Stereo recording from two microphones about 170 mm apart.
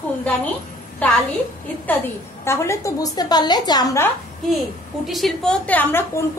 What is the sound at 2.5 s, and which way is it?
A woman's voice, 15° left (ahead or behind).